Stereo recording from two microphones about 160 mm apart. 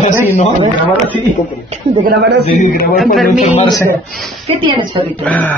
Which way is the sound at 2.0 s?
90° right.